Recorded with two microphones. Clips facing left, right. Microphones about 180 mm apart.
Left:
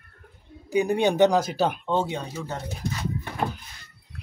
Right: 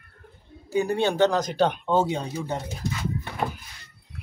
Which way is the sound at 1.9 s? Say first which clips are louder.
Right 3 dB; 5° right (ahead or behind).